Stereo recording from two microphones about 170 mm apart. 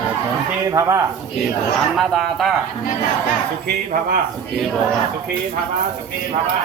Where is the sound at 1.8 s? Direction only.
Centre (ahead or behind).